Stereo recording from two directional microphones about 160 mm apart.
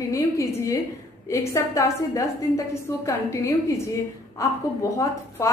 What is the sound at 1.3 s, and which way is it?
A woman's voice, 20° left (ahead or behind).